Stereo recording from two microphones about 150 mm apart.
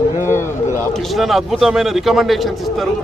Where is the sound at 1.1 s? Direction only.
Centre (ahead or behind).